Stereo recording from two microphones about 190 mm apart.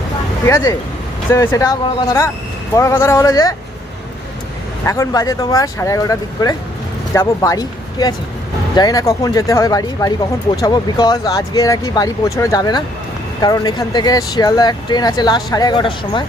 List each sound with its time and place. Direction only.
0.4 s speech: 15° left (ahead or behind)
4.9 s speech: 15° left (ahead or behind)